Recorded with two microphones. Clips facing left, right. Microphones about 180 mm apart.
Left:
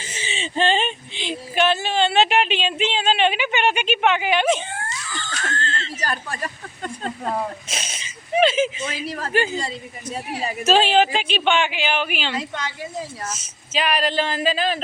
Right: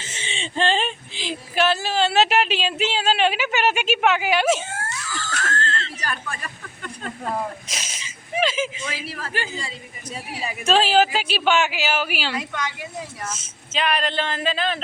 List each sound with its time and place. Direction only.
0.0 s speech: 10° left (ahead or behind)
6.0 s speech: 40° left (ahead or behind)
7.7 s a sound: 30° left (ahead or behind)
8.4 s speech: 25° left (ahead or behind)
8.9 s a woman's voice: 40° left (ahead or behind)
10.7 s speech: centre (ahead or behind)
12.3 s a woman's voice: 30° left (ahead or behind)
13.7 s speech: 10° left (ahead or behind)